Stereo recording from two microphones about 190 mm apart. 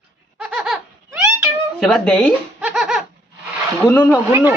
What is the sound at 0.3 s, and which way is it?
Laughter, 5° right (ahead or behind).